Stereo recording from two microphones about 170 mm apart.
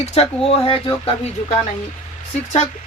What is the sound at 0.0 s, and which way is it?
Speech, 40° left (ahead or behind).